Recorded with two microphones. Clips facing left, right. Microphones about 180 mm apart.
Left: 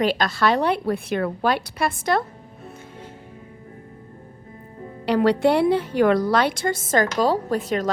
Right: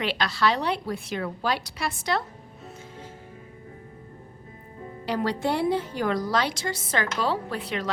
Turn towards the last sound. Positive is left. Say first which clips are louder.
# left 7 dB
turn(degrees=45)  # may be behind; listen again after turning